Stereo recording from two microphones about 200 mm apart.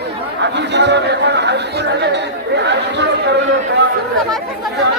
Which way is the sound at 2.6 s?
60° right (ahead or behind).